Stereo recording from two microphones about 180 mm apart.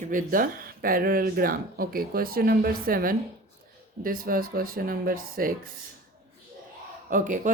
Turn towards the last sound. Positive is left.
turn(degrees=-45)  # may be behind; listen again after turning